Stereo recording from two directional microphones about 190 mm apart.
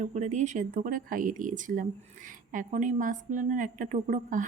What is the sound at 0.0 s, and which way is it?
Speech, 40° right (ahead or behind).